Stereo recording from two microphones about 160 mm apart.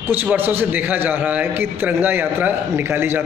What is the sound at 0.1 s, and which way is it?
A man's voice, 10° right (ahead or behind).